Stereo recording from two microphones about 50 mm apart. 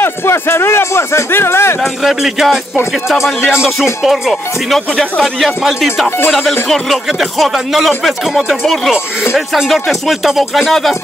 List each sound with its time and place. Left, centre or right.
0.0 s speech: left
1.8 s speech: centre
4.0 s speech: centre
6.0 s speech: left
6.7 s speech: centre